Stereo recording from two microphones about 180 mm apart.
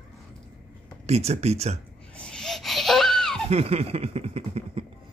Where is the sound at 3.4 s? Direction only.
35° right (ahead or behind).